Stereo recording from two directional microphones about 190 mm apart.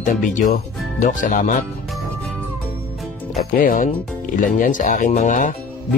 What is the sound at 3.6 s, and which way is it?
Speech, 50° left (ahead or behind).